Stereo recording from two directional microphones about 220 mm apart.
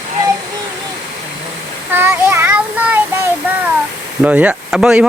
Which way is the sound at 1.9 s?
10° right (ahead or behind).